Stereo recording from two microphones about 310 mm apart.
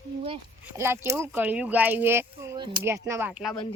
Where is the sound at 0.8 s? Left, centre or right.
Centre.